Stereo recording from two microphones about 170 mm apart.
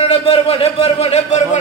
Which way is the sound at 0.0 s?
35° left (ahead or behind).